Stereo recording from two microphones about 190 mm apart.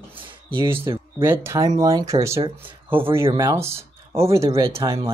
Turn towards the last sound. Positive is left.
turn(degrees=-20)  # may be behind; listen again after turning